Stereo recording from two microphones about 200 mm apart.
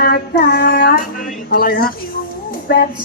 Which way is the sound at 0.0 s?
50° left (ahead or behind).